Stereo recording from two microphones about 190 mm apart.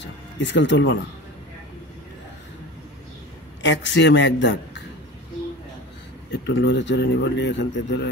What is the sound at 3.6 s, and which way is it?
Speech, 70° left (ahead or behind).